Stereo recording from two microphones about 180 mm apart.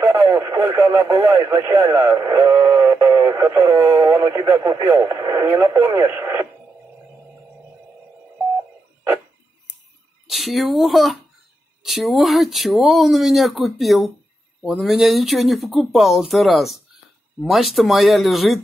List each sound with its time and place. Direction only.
0.0 s speech: 15° right (ahead or behind)
10.2 s speech: centre (ahead or behind)